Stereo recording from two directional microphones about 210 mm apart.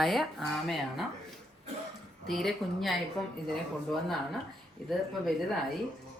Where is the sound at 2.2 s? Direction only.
Centre (ahead or behind).